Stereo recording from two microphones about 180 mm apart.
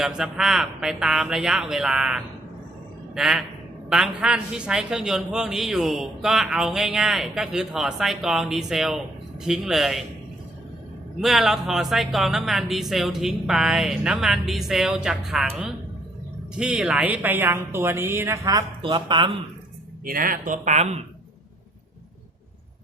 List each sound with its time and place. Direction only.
0.0 s a woman's voice: centre (ahead or behind)
11.2 s a woman's voice: centre (ahead or behind); by 18.6 s 15° right (ahead or behind)
18.8 s speech: 30° right (ahead or behind)
20.1 s speech: 50° right (ahead or behind)